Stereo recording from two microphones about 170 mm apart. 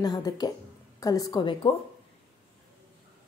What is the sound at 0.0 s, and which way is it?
A woman's voice, 25° left (ahead or behind).